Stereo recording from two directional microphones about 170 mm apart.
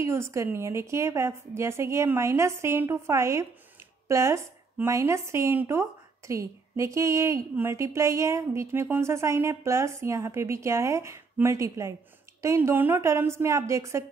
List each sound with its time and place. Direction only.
0.0 s speech: 15° right (ahead or behind)